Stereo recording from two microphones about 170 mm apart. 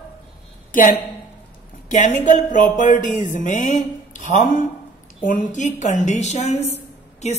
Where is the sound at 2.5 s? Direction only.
45° left (ahead or behind).